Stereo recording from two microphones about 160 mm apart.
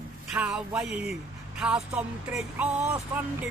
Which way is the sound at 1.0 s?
5° right (ahead or behind).